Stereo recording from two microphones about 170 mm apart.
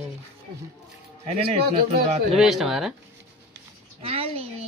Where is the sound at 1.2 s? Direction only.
35° right (ahead or behind).